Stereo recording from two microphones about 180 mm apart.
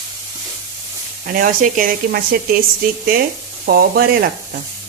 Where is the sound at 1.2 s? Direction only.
50° right (ahead or behind).